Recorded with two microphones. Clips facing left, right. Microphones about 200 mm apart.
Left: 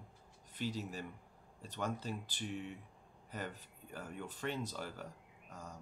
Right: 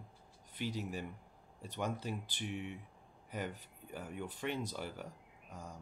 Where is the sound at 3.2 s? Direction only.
15° right (ahead or behind).